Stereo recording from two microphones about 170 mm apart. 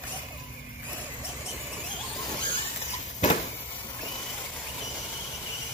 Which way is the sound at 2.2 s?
30° left (ahead or behind).